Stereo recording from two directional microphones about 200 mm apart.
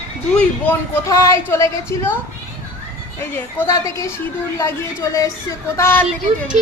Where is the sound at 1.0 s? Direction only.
15° left (ahead or behind).